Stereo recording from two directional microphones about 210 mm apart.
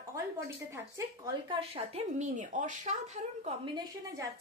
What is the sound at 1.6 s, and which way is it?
Speech, 30° right (ahead or behind).